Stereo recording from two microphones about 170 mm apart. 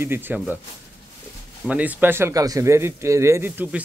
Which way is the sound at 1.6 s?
10° right (ahead or behind).